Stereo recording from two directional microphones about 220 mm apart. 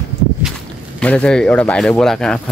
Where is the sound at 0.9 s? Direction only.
5° left (ahead or behind).